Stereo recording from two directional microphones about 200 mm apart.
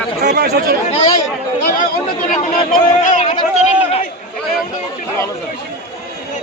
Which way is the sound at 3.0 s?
35° left (ahead or behind).